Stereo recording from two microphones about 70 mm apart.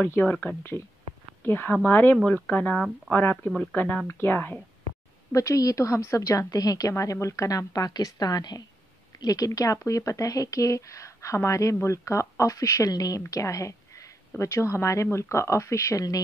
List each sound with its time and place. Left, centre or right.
0.0 s a woman's voice: left
2.4 s speech: centre
4.1 s a woman's voice: left
5.3 s a woman's voice: left
13.3 s a sound: left
14.3 s speech: left